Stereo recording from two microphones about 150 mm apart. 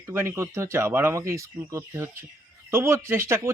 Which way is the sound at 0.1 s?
15° right (ahead or behind).